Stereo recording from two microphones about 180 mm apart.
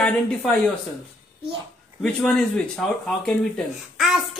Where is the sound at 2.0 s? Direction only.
Centre (ahead or behind).